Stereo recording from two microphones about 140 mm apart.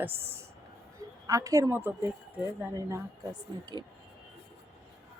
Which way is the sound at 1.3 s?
25° right (ahead or behind).